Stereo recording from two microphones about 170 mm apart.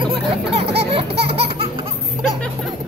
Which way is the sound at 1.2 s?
35° right (ahead or behind).